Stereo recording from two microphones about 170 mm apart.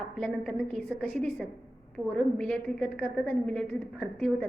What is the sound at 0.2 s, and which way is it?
A woman's voice, centre (ahead or behind).